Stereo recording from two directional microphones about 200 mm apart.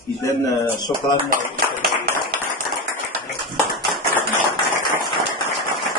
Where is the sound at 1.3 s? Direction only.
40° right (ahead or behind).